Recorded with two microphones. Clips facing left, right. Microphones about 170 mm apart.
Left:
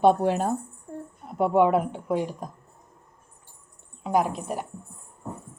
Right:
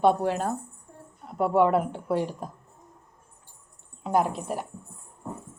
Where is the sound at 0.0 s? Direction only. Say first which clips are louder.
Left 2 dB; 20° left (ahead or behind).